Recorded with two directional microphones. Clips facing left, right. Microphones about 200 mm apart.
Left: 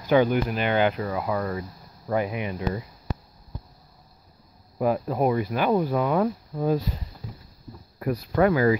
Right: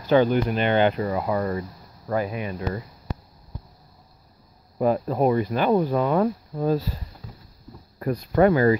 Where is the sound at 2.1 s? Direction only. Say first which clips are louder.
Even; 15° left (ahead or behind).